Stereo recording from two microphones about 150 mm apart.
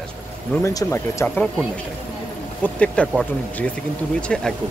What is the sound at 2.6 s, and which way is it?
Speech, 10° left (ahead or behind).